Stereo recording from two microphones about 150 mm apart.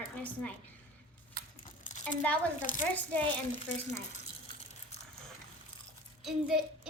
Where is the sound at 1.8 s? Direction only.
60° left (ahead or behind).